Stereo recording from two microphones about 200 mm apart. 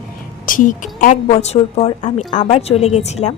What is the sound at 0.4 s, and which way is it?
A woman's voice, 40° left (ahead or behind).